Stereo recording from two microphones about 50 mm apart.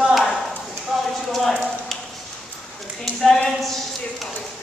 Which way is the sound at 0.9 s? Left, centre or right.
Centre.